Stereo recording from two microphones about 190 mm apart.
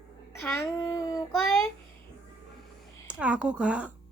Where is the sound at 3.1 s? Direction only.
5° right (ahead or behind).